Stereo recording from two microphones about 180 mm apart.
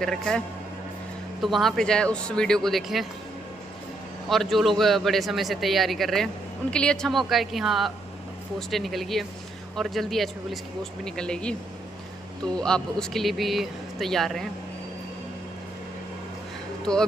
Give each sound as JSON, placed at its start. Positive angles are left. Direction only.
{"t": 0.0, "sound": "a man's voice", "side_deg": 5}
{"t": 1.4, "sound": "a man's voice", "side_deg": 0}
{"t": 4.3, "sound": "a man's voice", "side_deg": 0}
{"t": 12.5, "sound": "a man's voice", "side_deg": 5}
{"t": 16.9, "sound": "a man's voice", "side_deg": 5}